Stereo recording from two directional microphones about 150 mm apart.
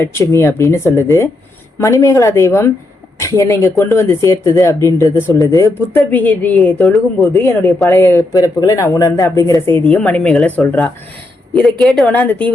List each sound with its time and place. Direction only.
0.0 s speech: 15° left (ahead or behind); by 7.3 s centre (ahead or behind)
7.9 s speech: 20° left (ahead or behind)